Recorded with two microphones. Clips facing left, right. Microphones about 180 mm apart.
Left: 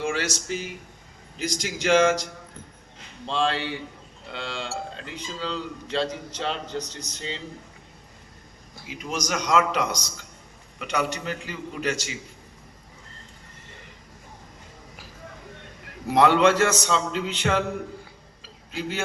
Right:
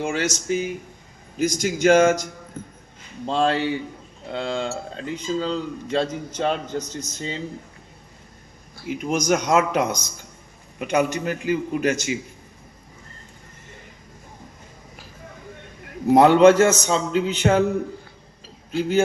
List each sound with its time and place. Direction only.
0.0 s speech: 45° right (ahead or behind)
3.2 s speech: 45° right (ahead or behind)
8.9 s speech: 50° right (ahead or behind)
16.0 s speech: 45° right (ahead or behind)